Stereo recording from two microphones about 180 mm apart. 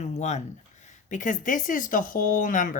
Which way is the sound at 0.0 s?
40° left (ahead or behind).